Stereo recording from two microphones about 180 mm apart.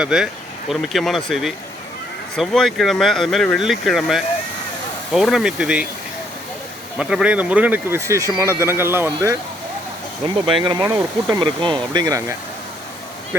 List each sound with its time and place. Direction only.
0.0 s speech: centre (ahead or behind)
7.0 s speech: 5° right (ahead or behind)
10.6 s speech: 20° right (ahead or behind)
11.3 s speech: 25° right (ahead or behind)